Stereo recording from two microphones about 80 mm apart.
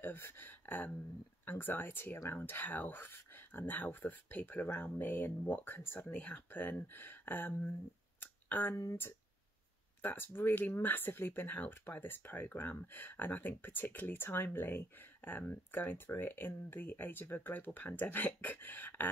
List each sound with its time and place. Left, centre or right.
0.0 s speech: left
8.2 s a sound: left
10.0 s speech: left